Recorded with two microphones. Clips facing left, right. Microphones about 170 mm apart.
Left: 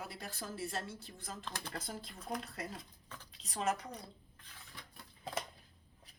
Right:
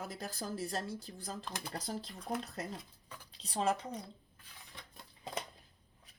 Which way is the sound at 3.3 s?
35° right (ahead or behind).